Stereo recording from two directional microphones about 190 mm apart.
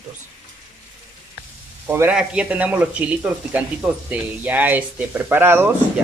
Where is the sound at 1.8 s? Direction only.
10° right (ahead or behind).